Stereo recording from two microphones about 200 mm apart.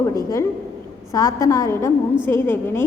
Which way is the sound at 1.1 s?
15° left (ahead or behind).